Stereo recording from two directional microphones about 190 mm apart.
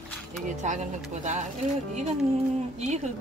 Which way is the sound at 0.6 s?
40° right (ahead or behind).